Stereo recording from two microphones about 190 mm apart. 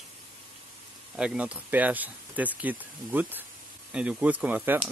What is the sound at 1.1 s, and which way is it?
Speech, 5° right (ahead or behind).